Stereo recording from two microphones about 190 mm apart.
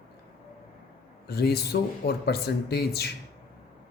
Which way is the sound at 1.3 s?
55° left (ahead or behind).